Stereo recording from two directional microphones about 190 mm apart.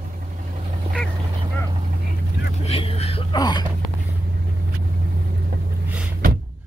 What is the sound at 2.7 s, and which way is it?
Vehicle, 30° left (ahead or behind).